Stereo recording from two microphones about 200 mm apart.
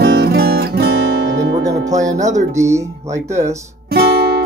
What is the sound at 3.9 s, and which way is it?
Guitar, 50° right (ahead or behind).